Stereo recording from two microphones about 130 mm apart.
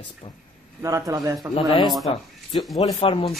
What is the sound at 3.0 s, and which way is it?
Speech, 40° left (ahead or behind).